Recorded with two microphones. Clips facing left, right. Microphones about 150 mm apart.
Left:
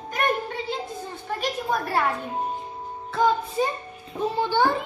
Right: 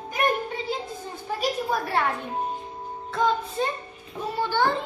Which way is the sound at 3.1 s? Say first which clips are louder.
Left 2 dB; 5° left (ahead or behind).